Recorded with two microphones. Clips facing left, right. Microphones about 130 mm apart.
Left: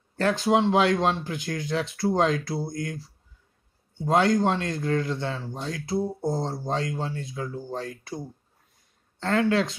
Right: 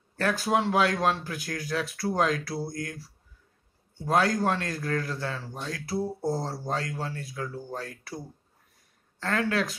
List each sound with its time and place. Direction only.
0.2 s speech: 25° left (ahead or behind)
9.2 s speech: 25° left (ahead or behind)